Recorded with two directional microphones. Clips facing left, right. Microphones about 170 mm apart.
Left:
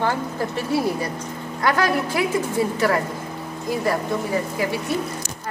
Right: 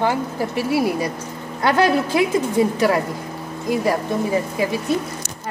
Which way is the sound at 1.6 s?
20° right (ahead or behind).